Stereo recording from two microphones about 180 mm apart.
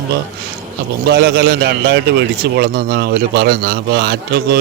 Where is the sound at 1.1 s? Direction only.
70° right (ahead or behind).